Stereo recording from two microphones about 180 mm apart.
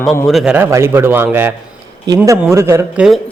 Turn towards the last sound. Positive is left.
turn(degrees=-15)  # may be behind; listen again after turning